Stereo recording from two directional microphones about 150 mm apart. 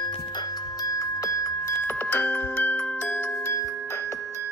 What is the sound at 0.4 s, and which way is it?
Music, 25° left (ahead or behind).